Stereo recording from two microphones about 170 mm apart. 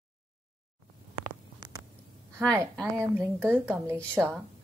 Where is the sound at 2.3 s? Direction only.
15° right (ahead or behind).